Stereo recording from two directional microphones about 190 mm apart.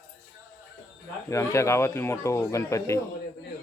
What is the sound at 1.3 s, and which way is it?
Speech, 15° left (ahead or behind).